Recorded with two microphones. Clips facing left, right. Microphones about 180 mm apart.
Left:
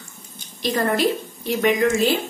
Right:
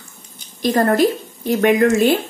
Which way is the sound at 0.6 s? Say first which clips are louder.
Right 6 dB; 45° right (ahead or behind).